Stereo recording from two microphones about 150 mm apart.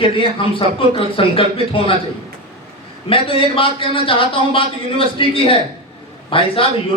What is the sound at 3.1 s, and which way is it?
A man's voice, 35° left (ahead or behind).